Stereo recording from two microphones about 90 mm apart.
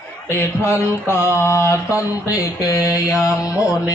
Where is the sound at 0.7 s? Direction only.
30° left (ahead or behind).